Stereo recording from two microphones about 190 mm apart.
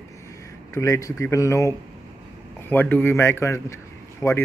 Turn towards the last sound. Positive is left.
turn(degrees=15)  # may be behind; listen again after turning